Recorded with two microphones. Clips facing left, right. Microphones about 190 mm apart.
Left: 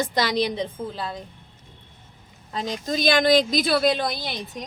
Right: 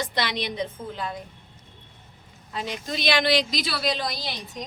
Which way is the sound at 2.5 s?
40° left (ahead or behind).